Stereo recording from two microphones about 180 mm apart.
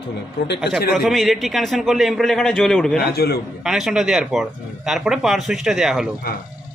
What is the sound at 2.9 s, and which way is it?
Speech, 60° left (ahead or behind).